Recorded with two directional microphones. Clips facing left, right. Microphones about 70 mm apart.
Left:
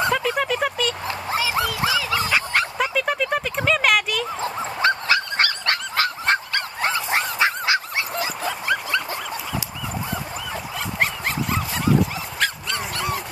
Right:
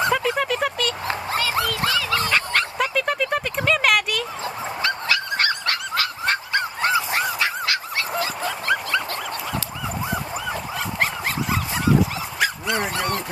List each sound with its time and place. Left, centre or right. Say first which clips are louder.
0.0 s a sound: even; centre
4.8 s dog: left 4 dB; left
5.7 s honk: left 2 dB; left
7.3 s dog: left 3 dB; left
8.4 s dog: right 1 dB; centre
10.5 s dog: right 1 dB; centre